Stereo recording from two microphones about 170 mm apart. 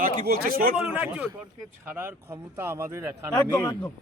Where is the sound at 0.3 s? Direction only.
60° right (ahead or behind).